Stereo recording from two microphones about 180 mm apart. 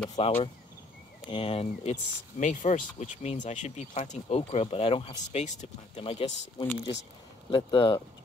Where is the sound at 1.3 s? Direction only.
30° left (ahead or behind).